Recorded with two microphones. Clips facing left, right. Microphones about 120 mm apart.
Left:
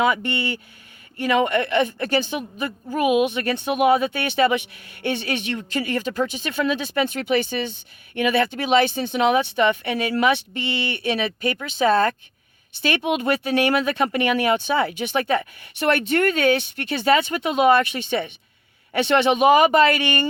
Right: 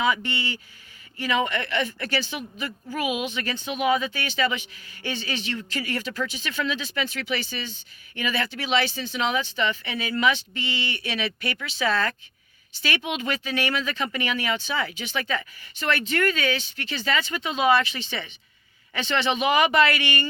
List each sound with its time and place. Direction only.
0.0 s a woman's voice: 55° left (ahead or behind)